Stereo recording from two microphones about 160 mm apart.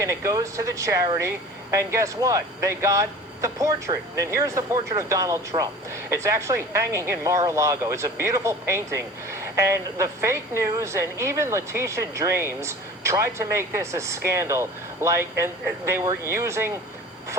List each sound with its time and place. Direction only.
0.0 s speech: 20° right (ahead or behind)